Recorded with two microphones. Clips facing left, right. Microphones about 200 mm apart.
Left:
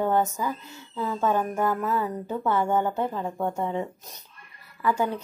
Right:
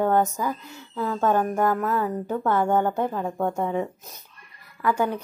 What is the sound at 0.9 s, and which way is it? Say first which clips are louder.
Music: right 3 dB; 10° left (ahead or behind).